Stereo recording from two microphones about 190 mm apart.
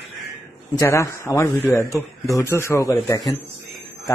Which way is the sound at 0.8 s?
15° left (ahead or behind).